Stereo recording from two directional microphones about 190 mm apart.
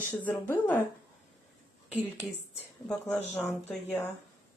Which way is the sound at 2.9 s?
5° left (ahead or behind).